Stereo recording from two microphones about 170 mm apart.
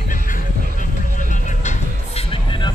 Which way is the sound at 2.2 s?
30° left (ahead or behind).